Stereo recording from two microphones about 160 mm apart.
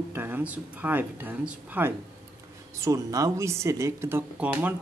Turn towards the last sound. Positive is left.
turn(degrees=-10)  # may be behind; listen again after turning